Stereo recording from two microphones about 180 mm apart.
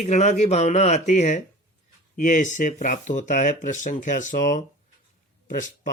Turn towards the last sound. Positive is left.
turn(degrees=45)  # may be behind; listen again after turning